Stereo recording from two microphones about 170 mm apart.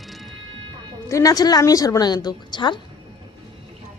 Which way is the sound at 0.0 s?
Centre (ahead or behind).